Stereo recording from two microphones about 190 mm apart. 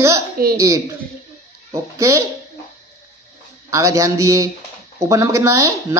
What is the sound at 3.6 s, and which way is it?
Speech, 15° right (ahead or behind).